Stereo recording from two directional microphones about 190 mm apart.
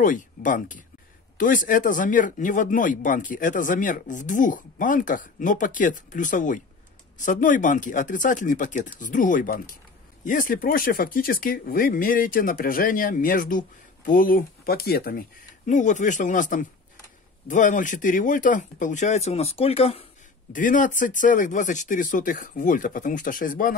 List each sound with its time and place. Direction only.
0.0 s speech: 45° left (ahead or behind)
20.5 s speech: 45° left (ahead or behind)